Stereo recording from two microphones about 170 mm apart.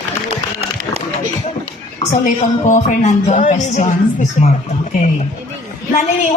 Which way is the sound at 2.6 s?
45° left (ahead or behind).